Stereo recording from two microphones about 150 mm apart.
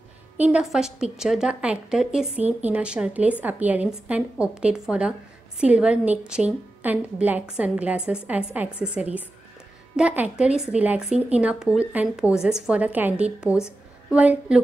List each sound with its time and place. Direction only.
0.4 s a woman's voice: 5° right (ahead or behind)